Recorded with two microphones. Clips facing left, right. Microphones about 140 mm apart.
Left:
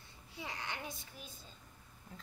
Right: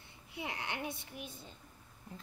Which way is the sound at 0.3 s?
65° right (ahead or behind).